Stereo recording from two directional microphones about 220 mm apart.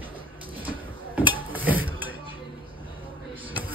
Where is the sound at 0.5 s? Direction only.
10° right (ahead or behind).